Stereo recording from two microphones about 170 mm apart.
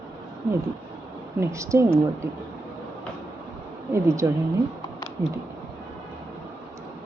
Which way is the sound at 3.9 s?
15° right (ahead or behind).